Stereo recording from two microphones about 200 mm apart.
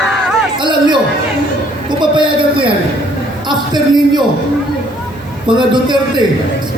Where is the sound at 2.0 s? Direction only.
25° right (ahead or behind).